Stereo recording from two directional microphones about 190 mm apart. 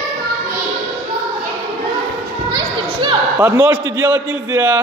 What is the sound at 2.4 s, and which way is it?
Speech, 20° right (ahead or behind).